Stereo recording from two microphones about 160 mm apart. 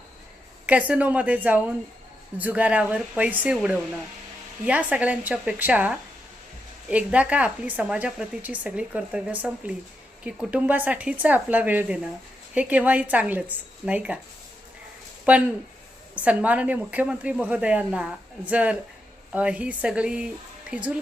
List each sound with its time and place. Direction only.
0.6 s speech: 10° right (ahead or behind)
15.2 s speech: 10° right (ahead or behind)